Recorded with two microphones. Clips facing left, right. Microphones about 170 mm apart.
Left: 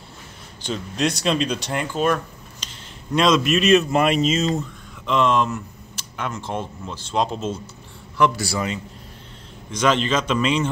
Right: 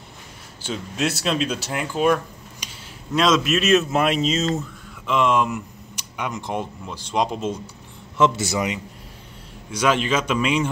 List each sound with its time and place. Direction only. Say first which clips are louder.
0.6 s a man's voice: left 1 dB; 5° right (ahead or behind)